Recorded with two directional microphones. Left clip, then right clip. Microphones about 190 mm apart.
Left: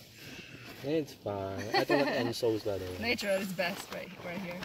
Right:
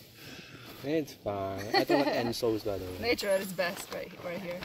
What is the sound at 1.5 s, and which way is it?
Speech, centre (ahead or behind).